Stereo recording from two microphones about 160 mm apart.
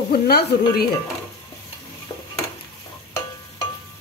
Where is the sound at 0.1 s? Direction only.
75° left (ahead or behind).